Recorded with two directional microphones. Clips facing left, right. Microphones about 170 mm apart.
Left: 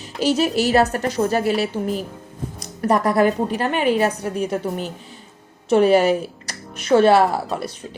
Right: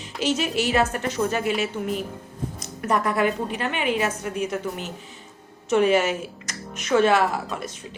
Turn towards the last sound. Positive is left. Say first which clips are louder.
# left 4 dB
turn(degrees=35)  # may be behind; listen again after turning